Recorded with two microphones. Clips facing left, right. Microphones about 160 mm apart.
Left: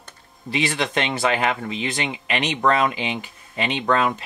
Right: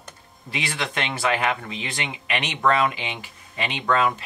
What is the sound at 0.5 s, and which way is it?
Speech, 30° left (ahead or behind).